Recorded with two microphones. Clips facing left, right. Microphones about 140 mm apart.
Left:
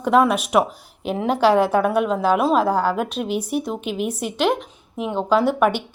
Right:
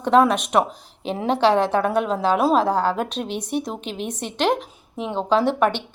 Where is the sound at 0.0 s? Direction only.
5° left (ahead or behind).